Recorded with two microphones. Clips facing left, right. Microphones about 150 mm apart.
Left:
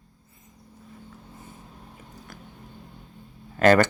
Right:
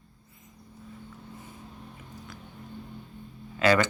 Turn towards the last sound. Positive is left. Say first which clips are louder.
# left 5 dB
turn(degrees=50)  # may be behind; listen again after turning